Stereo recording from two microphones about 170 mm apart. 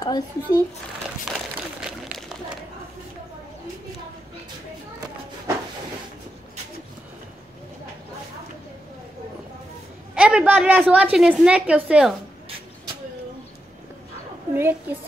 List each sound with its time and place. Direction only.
0.0 s speech: 25° left (ahead or behind)
1.8 s a sound: 5° right (ahead or behind)
10.1 s a woman's voice: 5° right (ahead or behind)
14.5 s a woman's voice: 10° right (ahead or behind)